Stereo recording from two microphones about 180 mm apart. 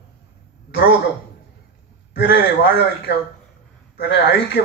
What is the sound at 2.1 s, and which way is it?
A man's voice, 85° left.